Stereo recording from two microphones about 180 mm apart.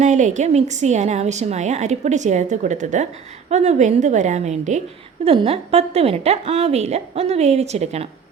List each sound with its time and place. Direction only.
0.0 s a woman's voice: 40° right (ahead or behind)